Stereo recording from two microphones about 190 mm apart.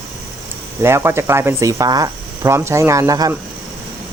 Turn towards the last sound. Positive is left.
turn(degrees=-20)  # may be behind; listen again after turning